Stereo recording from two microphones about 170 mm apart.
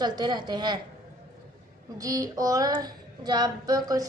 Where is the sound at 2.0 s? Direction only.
20° right (ahead or behind).